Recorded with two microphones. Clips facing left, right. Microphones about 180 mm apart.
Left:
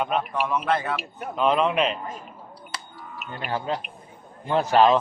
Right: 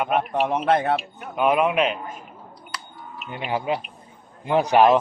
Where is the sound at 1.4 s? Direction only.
10° right (ahead or behind).